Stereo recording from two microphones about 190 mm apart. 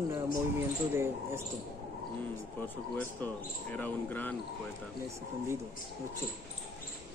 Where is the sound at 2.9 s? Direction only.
10° left (ahead or behind).